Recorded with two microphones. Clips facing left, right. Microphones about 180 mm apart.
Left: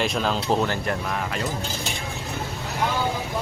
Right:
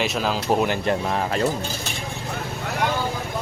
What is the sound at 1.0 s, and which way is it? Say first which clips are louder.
Speech: right 5 dB; 35° right (ahead or behind).